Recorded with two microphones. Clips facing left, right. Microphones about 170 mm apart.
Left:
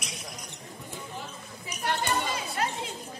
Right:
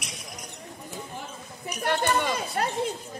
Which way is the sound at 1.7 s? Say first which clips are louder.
Right 4 dB; 60° right (ahead or behind).